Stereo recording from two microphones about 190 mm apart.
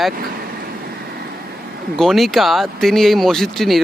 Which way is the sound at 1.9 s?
Centre (ahead or behind).